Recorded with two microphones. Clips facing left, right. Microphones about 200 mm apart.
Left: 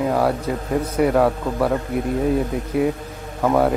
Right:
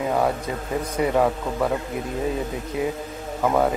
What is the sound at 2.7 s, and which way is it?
Speech, 65° left (ahead or behind).